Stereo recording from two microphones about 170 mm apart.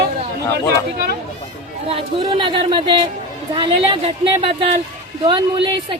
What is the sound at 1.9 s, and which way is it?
Speech, 35° right (ahead or behind).